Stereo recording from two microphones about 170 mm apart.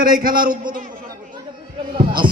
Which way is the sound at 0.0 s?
60° right (ahead or behind).